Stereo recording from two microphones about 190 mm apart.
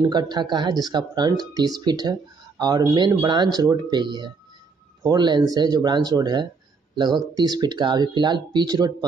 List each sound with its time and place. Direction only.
0.0 s speech: 20° right (ahead or behind)